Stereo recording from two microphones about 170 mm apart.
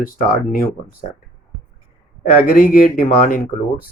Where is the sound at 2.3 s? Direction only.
55° left (ahead or behind).